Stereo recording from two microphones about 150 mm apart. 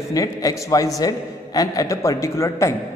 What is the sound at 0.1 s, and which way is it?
A man's voice, 20° left (ahead or behind).